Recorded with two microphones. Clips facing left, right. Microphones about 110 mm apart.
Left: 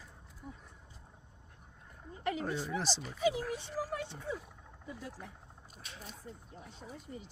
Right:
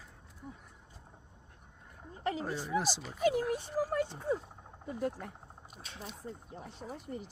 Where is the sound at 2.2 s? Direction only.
30° right (ahead or behind).